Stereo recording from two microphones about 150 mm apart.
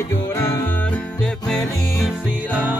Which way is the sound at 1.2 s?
5° left (ahead or behind).